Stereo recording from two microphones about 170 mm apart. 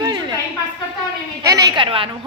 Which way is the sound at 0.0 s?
25° right (ahead or behind).